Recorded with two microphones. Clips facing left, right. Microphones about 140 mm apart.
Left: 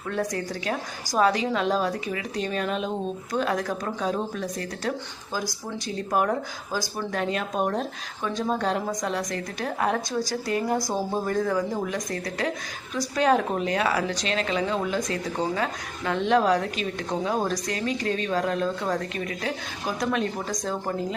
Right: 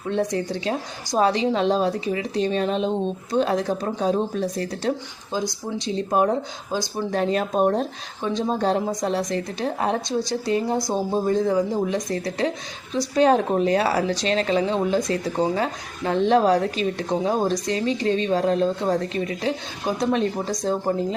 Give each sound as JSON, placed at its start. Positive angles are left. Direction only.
{"t": 0.1, "sound": "speech", "side_deg": -25}